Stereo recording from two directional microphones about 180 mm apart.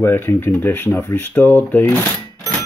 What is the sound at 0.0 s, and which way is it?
Speech, 10° left (ahead or behind).